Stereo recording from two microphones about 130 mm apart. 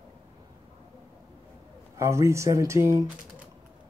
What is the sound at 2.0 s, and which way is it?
Speech, 20° right (ahead or behind).